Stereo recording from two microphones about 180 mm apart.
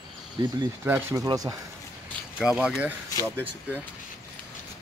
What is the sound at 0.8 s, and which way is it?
Speech, 15° right (ahead or behind).